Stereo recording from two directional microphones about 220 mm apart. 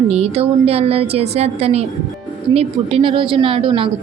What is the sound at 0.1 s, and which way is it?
Speech, 30° right (ahead or behind).